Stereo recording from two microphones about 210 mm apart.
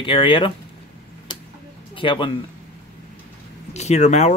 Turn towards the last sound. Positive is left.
turn(degrees=30)  # may be behind; listen again after turning